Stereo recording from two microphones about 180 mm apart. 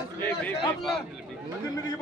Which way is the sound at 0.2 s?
10° left (ahead or behind).